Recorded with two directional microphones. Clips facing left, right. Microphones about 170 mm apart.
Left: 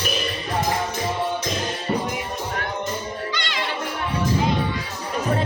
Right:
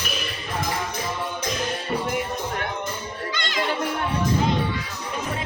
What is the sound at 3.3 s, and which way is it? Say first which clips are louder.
Music: right 1 dB; 45° right (ahead or behind).